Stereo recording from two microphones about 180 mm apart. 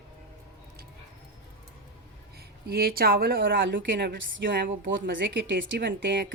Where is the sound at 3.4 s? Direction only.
90° right.